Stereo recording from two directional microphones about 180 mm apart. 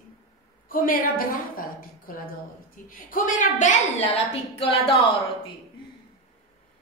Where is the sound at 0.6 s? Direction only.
50° left (ahead or behind).